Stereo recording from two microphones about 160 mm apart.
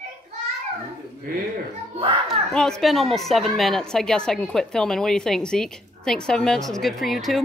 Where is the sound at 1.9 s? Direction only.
30° right (ahead or behind).